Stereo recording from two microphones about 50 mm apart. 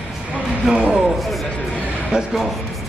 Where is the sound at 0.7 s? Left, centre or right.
Centre.